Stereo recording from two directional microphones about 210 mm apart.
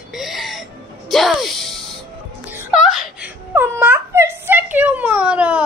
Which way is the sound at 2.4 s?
5° right (ahead or behind).